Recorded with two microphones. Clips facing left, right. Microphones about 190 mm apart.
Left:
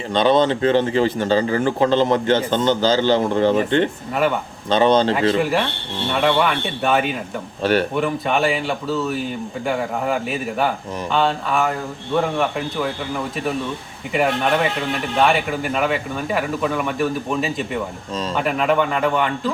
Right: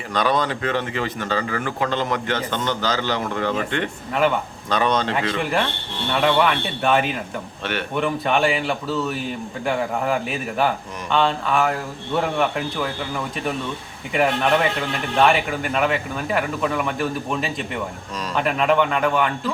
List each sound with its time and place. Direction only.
0.1 s a man's voice: 25° left (ahead or behind)
5.4 s speech: 5° left (ahead or behind)
7.6 s speech: 35° left (ahead or behind)
7.9 s speech: centre (ahead or behind)
14.8 s speech: centre (ahead or behind)